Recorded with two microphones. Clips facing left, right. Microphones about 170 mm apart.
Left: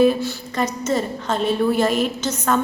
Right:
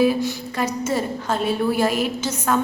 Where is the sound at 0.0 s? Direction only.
10° right (ahead or behind).